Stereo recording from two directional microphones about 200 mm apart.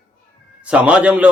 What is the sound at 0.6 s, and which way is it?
Speech, 5° right (ahead or behind).